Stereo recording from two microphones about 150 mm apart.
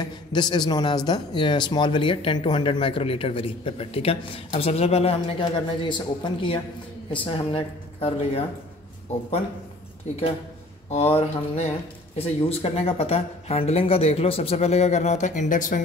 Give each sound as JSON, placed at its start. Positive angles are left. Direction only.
{"t": 0.0, "sound": "speech", "side_deg": 30}
{"t": 11.1, "sound": "speech", "side_deg": 45}